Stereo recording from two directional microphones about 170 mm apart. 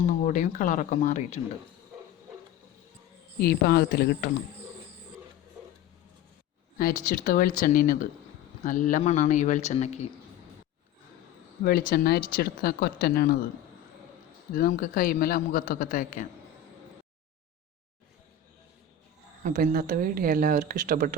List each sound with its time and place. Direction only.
0.2 s speech: 50° left (ahead or behind)
3.4 s speech: 65° left (ahead or behind)
6.7 s a man's voice: 55° left (ahead or behind)
11.9 s a man's voice: 65° left (ahead or behind)
14.5 s a man's voice: 55° left (ahead or behind)
19.4 s speech: 50° right (ahead or behind)